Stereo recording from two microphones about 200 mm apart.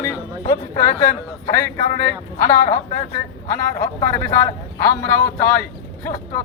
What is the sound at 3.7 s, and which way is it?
A man's voice, 15° left (ahead or behind).